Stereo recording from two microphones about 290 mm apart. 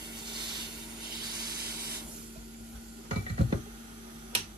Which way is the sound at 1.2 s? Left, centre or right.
Centre.